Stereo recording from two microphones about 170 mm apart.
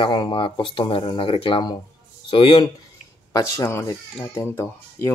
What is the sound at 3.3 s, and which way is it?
Speech, 15° left (ahead or behind).